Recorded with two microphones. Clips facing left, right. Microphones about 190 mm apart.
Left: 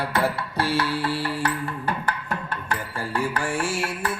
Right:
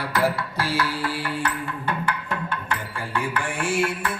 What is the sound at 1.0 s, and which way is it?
Music, 30° left (ahead or behind).